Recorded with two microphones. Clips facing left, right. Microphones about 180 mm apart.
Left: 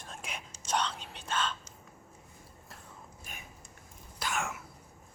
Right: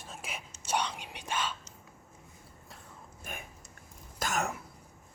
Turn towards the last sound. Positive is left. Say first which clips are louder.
# right 3 dB
turn(degrees=-35)  # may be behind; listen again after turning